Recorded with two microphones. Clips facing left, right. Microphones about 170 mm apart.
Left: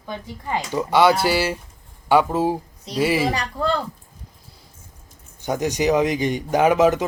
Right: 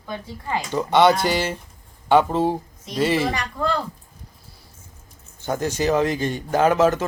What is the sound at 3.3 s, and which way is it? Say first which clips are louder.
Speech: left 1 dB; 30° left (ahead or behind).